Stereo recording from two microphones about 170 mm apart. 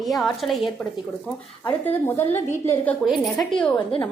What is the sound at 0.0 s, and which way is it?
Speech, centre (ahead or behind).